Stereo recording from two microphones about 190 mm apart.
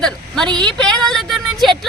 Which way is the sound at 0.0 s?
5° left (ahead or behind).